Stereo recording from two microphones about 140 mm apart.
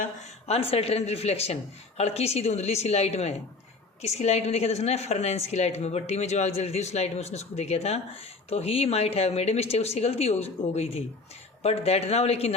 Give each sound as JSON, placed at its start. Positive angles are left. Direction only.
{"t": 0.4, "sound": "a woman's voice", "side_deg": 45}